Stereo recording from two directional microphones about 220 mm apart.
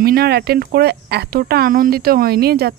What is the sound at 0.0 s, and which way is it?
Speech, 45° right (ahead or behind).